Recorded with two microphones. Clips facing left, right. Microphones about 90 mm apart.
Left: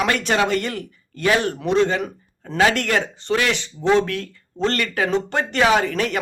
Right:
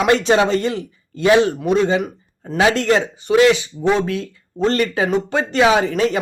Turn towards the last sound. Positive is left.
turn(degrees=-20)  # may be behind; listen again after turning